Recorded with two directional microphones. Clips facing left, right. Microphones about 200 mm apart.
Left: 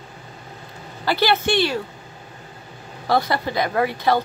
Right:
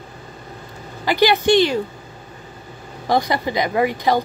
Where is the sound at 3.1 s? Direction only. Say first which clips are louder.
Right 1 dB; 15° right (ahead or behind).